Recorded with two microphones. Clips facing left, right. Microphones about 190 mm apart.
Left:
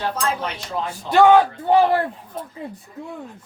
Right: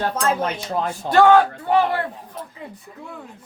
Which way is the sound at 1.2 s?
15° left (ahead or behind).